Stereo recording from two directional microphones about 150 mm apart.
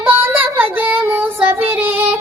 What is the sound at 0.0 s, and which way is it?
Child singing, 15° right (ahead or behind).